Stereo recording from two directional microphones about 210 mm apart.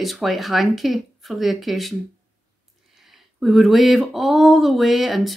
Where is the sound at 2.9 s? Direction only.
Centre (ahead or behind).